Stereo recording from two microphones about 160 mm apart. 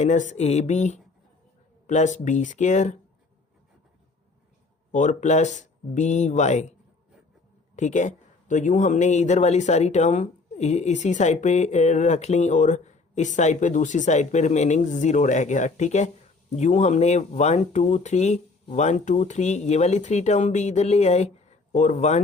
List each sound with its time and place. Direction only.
0.0 s speech: 50° left (ahead or behind)
4.9 s speech: 50° left (ahead or behind)
7.8 s speech: 50° left (ahead or behind)